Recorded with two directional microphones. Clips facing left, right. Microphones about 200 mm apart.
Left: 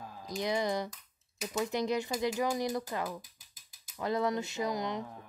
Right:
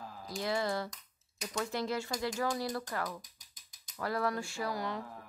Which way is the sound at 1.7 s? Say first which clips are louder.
Left 4 dB; 20° left (ahead or behind).